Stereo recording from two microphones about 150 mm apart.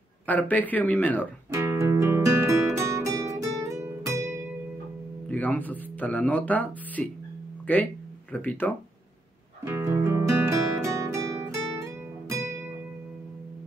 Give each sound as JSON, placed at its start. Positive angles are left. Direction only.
{"t": 0.3, "sound": "speech", "side_deg": 10}
{"t": 1.8, "sound": "music", "side_deg": -20}
{"t": 5.3, "sound": "speech", "side_deg": 10}
{"t": 9.7, "sound": "music", "side_deg": -20}